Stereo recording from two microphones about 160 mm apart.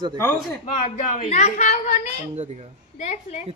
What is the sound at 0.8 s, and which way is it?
Speech, 45° left (ahead or behind).